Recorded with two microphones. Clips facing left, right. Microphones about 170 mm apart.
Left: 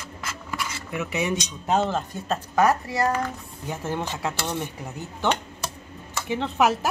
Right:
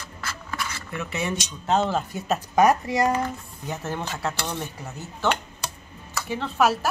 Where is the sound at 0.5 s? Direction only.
15° left (ahead or behind).